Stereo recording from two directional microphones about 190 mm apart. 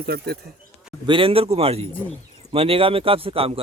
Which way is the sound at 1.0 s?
25° right (ahead or behind).